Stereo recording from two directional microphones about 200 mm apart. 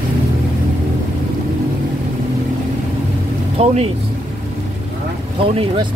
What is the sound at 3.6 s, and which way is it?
Boat, 30° right (ahead or behind).